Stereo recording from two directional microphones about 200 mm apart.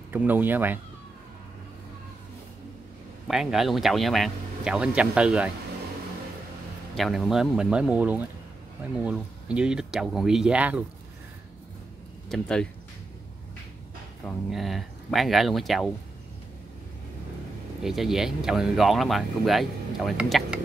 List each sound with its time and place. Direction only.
0.1 s speech: 10° right (ahead or behind)
3.3 s speech: centre (ahead or behind)
7.0 s speech: centre (ahead or behind)
12.3 s speech: 5° left (ahead or behind)
14.2 s speech: centre (ahead or behind)
17.8 s speech: centre (ahead or behind)